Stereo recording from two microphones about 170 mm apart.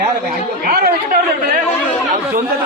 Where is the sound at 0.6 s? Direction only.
55° right (ahead or behind).